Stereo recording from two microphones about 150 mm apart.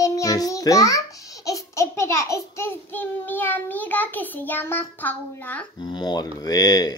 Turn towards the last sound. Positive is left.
turn(degrees=25)  # may be behind; listen again after turning